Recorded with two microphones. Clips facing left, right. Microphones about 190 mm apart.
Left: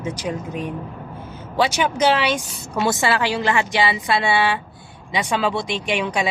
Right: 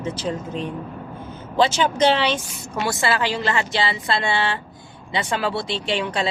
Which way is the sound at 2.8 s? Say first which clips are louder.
Left 2 dB; 20° left (ahead or behind).